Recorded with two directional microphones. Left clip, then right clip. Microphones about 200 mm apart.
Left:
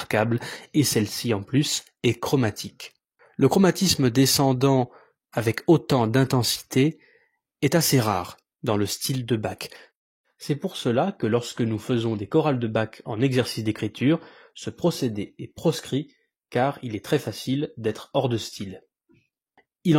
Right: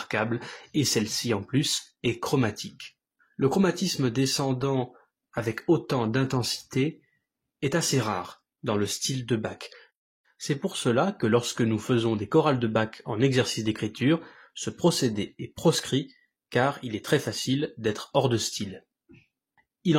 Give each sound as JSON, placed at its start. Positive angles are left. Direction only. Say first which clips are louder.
{"t": 0.0, "sound": "speech", "louder": "left 5 dB", "side_deg": 40}
{"t": 10.4, "sound": "speech", "louder": "left 1 dB", "side_deg": 30}